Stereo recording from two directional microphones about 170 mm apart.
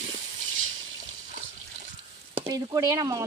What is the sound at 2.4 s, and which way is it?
Speech, 20° right (ahead or behind).